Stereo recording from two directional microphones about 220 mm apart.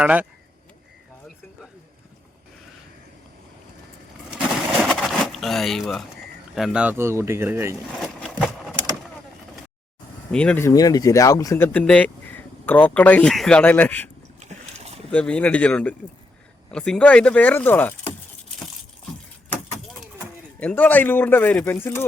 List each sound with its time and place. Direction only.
0.0 s speech: 5° right (ahead or behind)
4.3 s a sound: 5° right (ahead or behind)
6.6 s speech: 5° right (ahead or behind)
10.3 s speech: 5° left (ahead or behind)
14.3 s boat: 30° right (ahead or behind)
15.1 s speech: 5° left (ahead or behind)
19.9 s speech: 5° left (ahead or behind)